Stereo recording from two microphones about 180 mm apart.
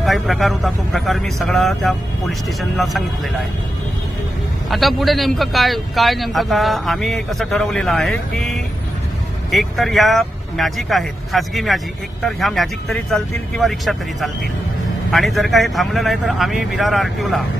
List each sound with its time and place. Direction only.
0.0 s speech: centre (ahead or behind)
4.6 s speech: centre (ahead or behind)